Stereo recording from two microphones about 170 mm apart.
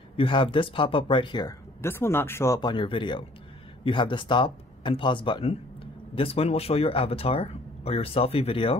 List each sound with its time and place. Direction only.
0.2 s speech: 30° left (ahead or behind)
1.8 s speech: 15° left (ahead or behind); by 8.7 s 35° left (ahead or behind)